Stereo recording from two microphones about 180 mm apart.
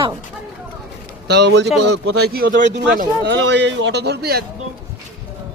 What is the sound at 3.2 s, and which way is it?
A man's voice, 75° right (ahead or behind).